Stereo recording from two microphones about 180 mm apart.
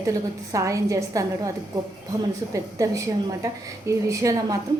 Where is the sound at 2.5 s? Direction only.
20° right (ahead or behind).